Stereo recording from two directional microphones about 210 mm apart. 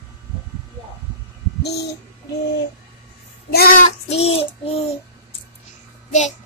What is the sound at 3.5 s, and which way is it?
Child singing, 45° left (ahead or behind).